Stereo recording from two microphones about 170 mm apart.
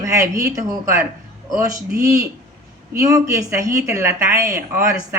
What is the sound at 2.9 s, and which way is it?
A woman's voice, 20° right (ahead or behind).